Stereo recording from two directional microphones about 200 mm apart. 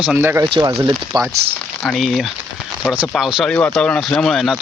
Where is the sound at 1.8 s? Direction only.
Centre (ahead or behind).